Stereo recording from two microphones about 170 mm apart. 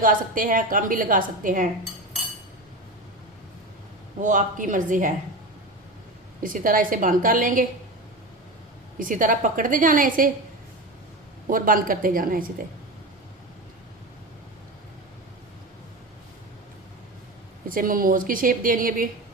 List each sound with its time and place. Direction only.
0.0 s a woman's voice: 55° right (ahead or behind)
4.2 s a woman's voice: 50° right (ahead or behind)
6.4 s a woman's voice: 55° right (ahead or behind)
9.0 s a woman's voice: 50° right (ahead or behind)
11.4 s a woman's voice: 55° right (ahead or behind)
17.7 s a woman's voice: 55° right (ahead or behind)